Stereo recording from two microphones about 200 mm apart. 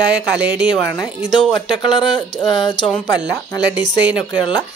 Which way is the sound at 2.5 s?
20° left (ahead or behind).